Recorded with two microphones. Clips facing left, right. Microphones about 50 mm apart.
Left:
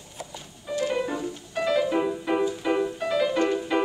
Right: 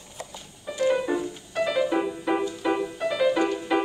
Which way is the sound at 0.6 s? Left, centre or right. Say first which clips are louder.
Right 3 dB; centre.